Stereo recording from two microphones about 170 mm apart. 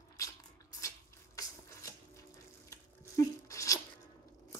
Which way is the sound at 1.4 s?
20° left (ahead or behind).